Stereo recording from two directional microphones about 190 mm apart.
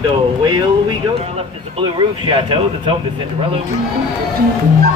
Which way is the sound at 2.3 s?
30° right (ahead or behind).